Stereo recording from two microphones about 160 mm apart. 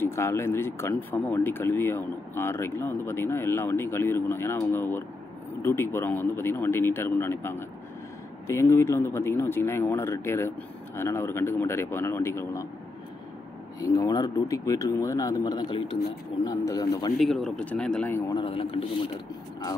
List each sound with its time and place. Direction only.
0.0 s speech: 15° left (ahead or behind)
13.7 s speech: 20° left (ahead or behind)
17.2 s speech: centre (ahead or behind)
18.3 s speech: 35° left (ahead or behind)